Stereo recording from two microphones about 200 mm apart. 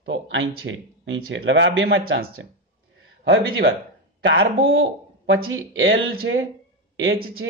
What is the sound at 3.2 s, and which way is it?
Speech, 50° right (ahead or behind).